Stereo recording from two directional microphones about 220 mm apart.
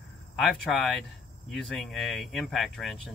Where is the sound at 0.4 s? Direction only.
Centre (ahead or behind).